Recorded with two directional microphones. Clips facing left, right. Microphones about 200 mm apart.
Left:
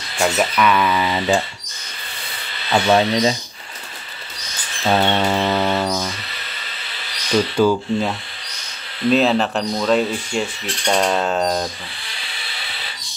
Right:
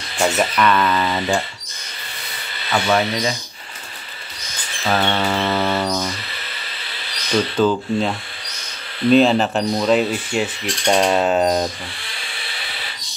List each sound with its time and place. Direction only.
0.2 s speech: 5° left (ahead or behind)
2.7 s speech: 25° left (ahead or behind)
4.8 s a sound: 20° left (ahead or behind); by 6.1 s centre (ahead or behind)
7.3 s speech: 10° left (ahead or behind)
9.8 s mechanisms: 5° right (ahead or behind)